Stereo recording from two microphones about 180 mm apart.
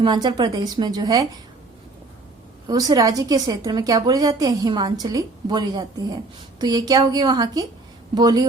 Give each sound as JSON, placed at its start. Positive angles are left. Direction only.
{"t": 0.0, "sound": "a woman's voice", "side_deg": -25}
{"t": 2.6, "sound": "a woman's voice", "side_deg": -20}